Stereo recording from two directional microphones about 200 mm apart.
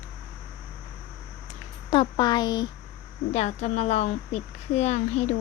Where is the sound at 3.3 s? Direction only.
30° left (ahead or behind).